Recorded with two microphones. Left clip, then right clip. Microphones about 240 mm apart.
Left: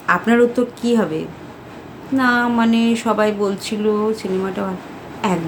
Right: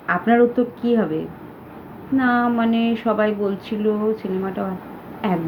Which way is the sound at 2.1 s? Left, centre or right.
Centre.